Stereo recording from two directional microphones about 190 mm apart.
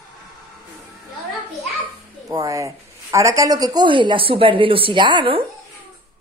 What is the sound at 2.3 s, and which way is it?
Speech, 15° right (ahead or behind).